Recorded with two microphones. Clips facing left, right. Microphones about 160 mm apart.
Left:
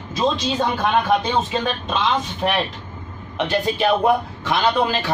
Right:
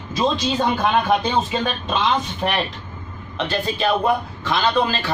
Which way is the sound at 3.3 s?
15° left (ahead or behind).